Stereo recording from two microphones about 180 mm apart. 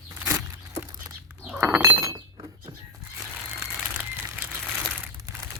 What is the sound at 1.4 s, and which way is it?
Goat, 10° right (ahead or behind).